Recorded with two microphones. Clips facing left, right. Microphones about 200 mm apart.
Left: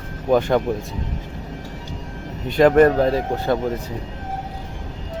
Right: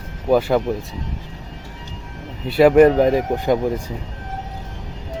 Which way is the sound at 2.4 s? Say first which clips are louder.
Right 2 dB; 5° right (ahead or behind).